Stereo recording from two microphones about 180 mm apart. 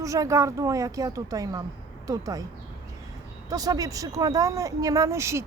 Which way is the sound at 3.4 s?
20° right (ahead or behind).